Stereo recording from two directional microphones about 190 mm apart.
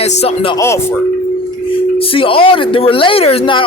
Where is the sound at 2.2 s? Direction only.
30° left (ahead or behind).